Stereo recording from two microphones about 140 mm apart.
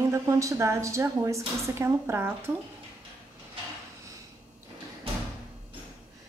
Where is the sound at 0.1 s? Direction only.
20° right (ahead or behind).